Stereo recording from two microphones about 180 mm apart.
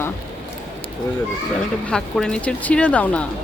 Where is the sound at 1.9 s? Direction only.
5° left (ahead or behind).